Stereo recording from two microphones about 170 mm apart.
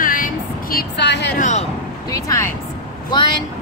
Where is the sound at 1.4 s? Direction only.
45° left (ahead or behind).